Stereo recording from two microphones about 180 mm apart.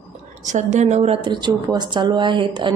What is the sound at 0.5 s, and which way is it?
A woman's voice, 40° right (ahead or behind).